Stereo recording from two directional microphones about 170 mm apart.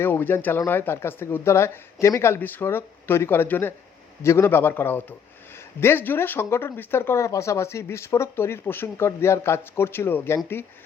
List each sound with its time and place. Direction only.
0.0 s speech: 10° left (ahead or behind)